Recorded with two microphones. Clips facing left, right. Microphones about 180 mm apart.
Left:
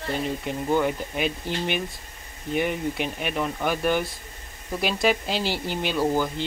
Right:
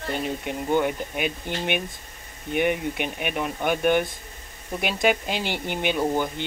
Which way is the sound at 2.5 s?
60° right (ahead or behind).